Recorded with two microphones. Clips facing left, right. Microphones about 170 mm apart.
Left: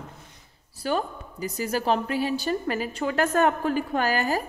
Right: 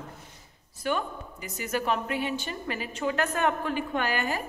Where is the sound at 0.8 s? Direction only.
35° left (ahead or behind).